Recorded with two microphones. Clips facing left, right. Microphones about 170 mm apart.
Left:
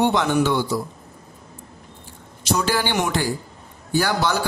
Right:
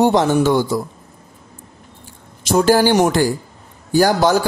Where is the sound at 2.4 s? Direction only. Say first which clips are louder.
Right 9 dB; 45° right (ahead or behind).